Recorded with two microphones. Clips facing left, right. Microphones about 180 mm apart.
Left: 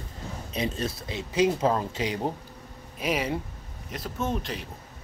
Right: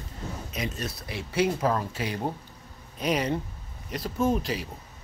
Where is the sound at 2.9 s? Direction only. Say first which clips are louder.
Right 1 dB; 5° left (ahead or behind).